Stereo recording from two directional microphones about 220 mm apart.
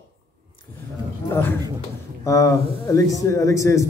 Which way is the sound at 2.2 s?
15° left (ahead or behind).